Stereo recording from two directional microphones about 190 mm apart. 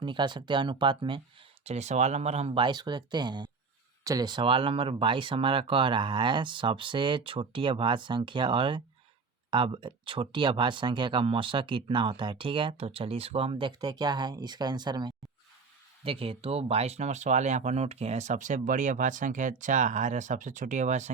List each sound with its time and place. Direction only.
0.0 s speech: 25° right (ahead or behind)
1.6 s speech: 35° right (ahead or behind)